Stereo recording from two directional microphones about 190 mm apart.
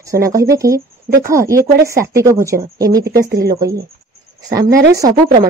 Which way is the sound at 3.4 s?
55° right (ahead or behind).